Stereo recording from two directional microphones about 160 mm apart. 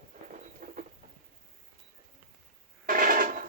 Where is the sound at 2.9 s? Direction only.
60° right (ahead or behind).